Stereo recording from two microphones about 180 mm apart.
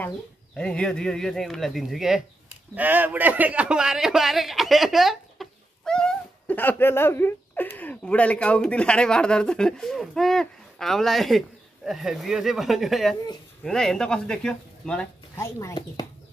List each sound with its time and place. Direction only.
0.6 s a man's voice: 5° left (ahead or behind)
15.3 s speech: 15° left (ahead or behind)